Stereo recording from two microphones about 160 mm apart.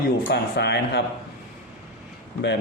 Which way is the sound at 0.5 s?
90° left.